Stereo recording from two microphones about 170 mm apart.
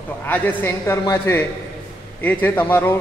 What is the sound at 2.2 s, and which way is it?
Speech, 10° left (ahead or behind).